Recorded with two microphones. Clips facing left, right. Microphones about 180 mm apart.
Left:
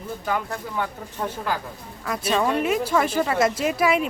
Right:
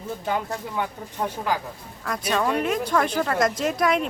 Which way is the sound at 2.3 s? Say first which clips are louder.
Left 2 dB; 10° left (ahead or behind).